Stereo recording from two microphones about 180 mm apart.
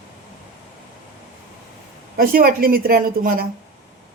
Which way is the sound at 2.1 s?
50° right (ahead or behind).